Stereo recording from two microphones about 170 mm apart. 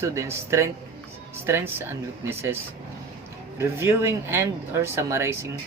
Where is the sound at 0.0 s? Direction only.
15° right (ahead or behind).